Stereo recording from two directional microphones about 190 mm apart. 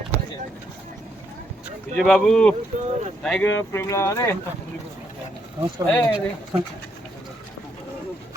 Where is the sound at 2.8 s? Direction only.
35° right (ahead or behind).